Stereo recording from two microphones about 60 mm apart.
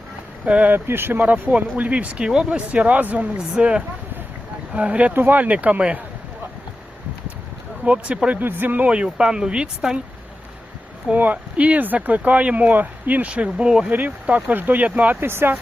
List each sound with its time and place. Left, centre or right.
0.4 s speech: right
0.9 s speech: right
3.3 s speech: centre
7.9 s speech: right
11.1 s speech: right
13.9 s speech: right